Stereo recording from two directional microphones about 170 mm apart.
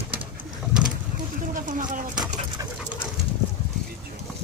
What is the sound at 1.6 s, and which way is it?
Bird, 50° right (ahead or behind).